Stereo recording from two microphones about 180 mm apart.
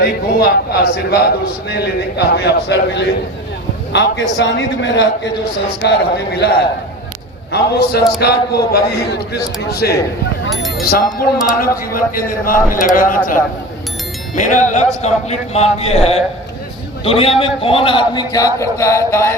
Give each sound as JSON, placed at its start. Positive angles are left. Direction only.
{"t": 0.0, "sound": "a man's voice", "side_deg": 65}
{"t": 5.8, "sound": "a man's voice", "side_deg": 65}
{"t": 7.5, "sound": "a man's voice", "side_deg": 60}